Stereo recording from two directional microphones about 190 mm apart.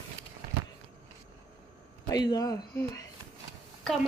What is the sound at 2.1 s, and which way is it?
Speech, 20° left (ahead or behind).